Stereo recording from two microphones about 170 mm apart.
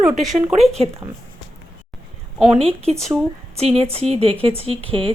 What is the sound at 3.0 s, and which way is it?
Speech, 5° left (ahead or behind).